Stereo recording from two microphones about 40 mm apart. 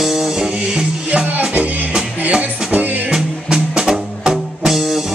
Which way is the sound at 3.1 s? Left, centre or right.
Centre.